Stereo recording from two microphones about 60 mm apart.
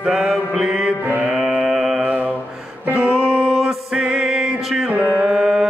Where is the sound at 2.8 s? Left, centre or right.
Right.